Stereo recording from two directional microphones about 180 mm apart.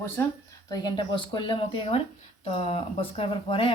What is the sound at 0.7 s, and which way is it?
Speech, 20° left (ahead or behind).